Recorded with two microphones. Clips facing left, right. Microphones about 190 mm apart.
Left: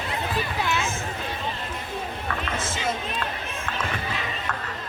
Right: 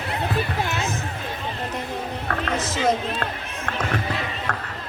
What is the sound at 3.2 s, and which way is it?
Run, 60° right (ahead or behind).